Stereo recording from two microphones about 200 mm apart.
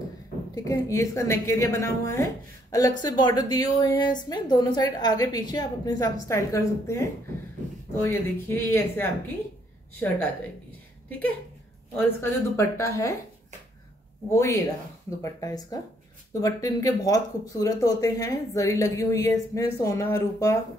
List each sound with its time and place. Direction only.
0.7 s a woman's voice: 15° left (ahead or behind)
11.1 s speech: 10° left (ahead or behind)
14.3 s speech: 15° left (ahead or behind)